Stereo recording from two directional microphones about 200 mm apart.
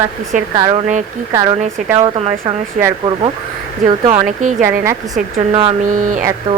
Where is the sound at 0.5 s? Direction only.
20° right (ahead or behind).